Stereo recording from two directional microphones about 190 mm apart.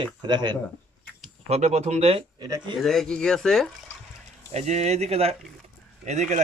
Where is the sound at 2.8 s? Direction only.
Centre (ahead or behind).